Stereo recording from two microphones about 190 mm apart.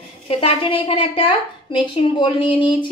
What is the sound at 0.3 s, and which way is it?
A woman's voice, 30° left (ahead or behind).